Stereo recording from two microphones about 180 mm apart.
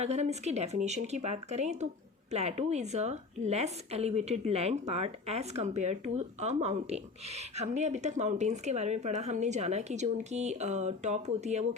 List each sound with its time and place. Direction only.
0.0 s a woman's voice: 40° right (ahead or behind)